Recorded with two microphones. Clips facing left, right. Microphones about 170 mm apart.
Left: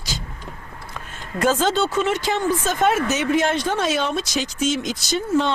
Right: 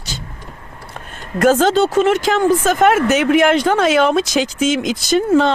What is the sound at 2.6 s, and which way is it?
Speech, 65° right (ahead or behind).